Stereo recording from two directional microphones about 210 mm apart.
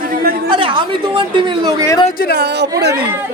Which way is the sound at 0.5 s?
20° right (ahead or behind).